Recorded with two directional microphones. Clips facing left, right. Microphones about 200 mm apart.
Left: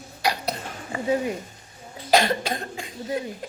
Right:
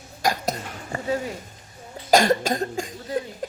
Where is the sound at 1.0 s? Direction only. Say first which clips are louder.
Left 3 dB; 20° left (ahead or behind).